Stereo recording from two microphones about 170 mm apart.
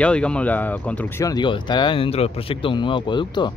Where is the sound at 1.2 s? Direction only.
25° left (ahead or behind).